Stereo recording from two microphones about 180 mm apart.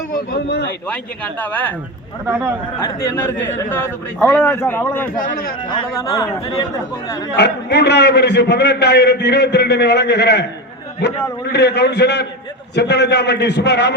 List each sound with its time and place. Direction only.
0.1 s speech: 60° left (ahead or behind)
0.9 s a man's voice: 10° left (ahead or behind)
2.2 s speech: 10° right (ahead or behind)
3.0 s a man's voice: 10° left (ahead or behind)
5.6 s speech: 20° left (ahead or behind)
7.3 s a man's voice: 70° left (ahead or behind)